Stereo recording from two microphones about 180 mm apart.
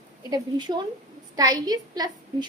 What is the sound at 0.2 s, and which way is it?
A woman's voice, 20° right (ahead or behind).